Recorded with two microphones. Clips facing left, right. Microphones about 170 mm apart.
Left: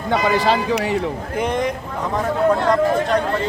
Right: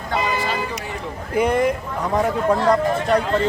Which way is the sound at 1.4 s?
5° right (ahead or behind).